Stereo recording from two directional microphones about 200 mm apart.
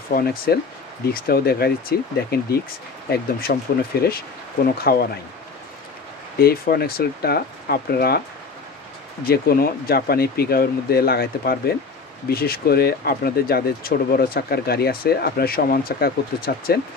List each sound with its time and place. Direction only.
0.1 s speech: 50° left (ahead or behind)
6.4 s speech: 50° left (ahead or behind)
9.3 s speech: 50° left (ahead or behind)